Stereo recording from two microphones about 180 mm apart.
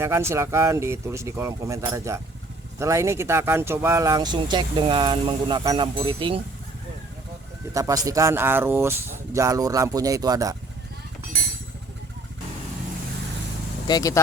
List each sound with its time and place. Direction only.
0.0 s speech: 15° right (ahead or behind)
7.7 s speech: 20° right (ahead or behind)
13.8 s speech: 20° left (ahead or behind)